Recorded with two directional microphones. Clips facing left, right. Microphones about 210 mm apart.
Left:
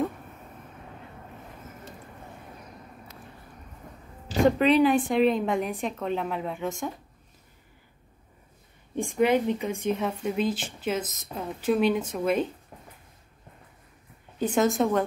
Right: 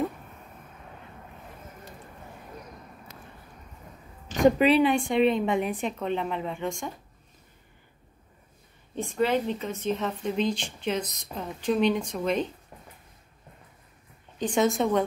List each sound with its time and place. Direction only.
4.4 s a sound: 15° right (ahead or behind)
4.6 s a woman's voice: centre (ahead or behind)
8.9 s speech: 15° left (ahead or behind)
14.4 s a woman's voice: centre (ahead or behind)